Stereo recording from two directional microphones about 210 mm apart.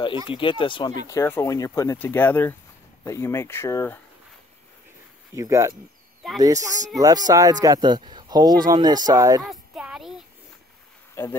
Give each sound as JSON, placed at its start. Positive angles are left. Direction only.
{"t": 0.3, "sound": "speech", "side_deg": 25}
{"t": 5.3, "sound": "speech", "side_deg": -15}
{"t": 9.4, "sound": "a sound", "side_deg": 0}
{"t": 11.2, "sound": "speech", "side_deg": 10}